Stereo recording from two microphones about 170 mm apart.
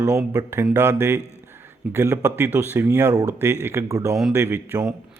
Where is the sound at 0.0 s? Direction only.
20° right (ahead or behind).